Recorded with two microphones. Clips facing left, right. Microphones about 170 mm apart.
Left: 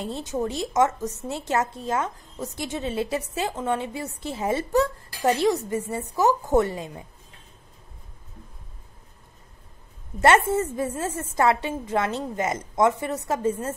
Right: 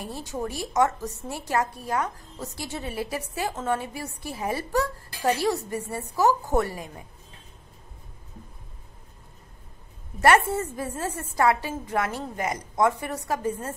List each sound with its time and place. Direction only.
0.0 s a woman's voice: 20° left (ahead or behind)
10.2 s a woman's voice: 20° left (ahead or behind)